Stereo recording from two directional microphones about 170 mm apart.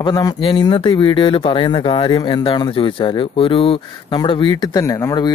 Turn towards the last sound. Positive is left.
turn(degrees=20)  # may be behind; listen again after turning